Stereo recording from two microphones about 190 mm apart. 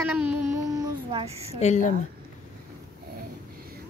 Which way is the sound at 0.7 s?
30° right (ahead or behind).